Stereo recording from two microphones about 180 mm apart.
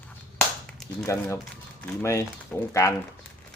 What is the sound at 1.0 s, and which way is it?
Speech, 15° left (ahead or behind).